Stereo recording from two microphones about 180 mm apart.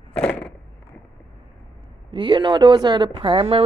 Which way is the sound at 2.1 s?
25° right (ahead or behind).